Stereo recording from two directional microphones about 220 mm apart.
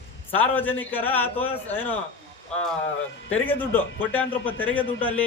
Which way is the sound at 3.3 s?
10° left (ahead or behind).